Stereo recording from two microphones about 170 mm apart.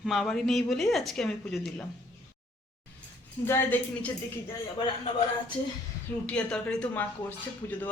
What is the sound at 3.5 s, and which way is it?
Speech, 10° left (ahead or behind).